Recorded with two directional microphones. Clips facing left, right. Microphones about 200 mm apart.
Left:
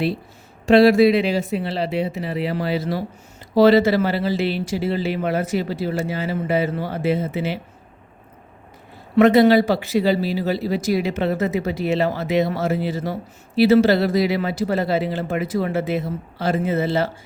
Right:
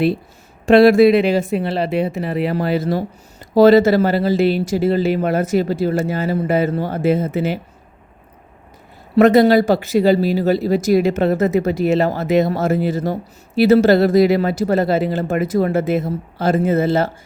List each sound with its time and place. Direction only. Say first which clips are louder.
0.6 s speech: right 3 dB; 50° right (ahead or behind)
9.1 s speech: right 2 dB; 45° right (ahead or behind)